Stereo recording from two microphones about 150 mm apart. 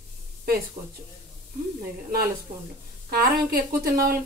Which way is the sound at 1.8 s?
75° right (ahead or behind).